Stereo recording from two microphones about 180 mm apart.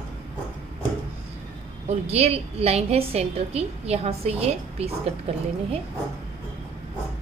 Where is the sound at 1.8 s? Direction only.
35° right (ahead or behind).